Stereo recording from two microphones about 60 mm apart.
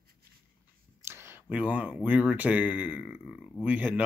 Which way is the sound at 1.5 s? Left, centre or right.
Right.